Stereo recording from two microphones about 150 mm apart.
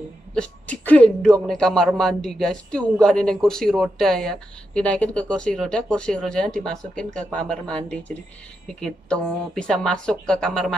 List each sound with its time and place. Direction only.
0.3 s speech: 5° left (ahead or behind)